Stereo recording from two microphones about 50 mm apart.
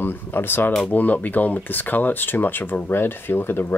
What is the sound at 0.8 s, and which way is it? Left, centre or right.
Speech, left.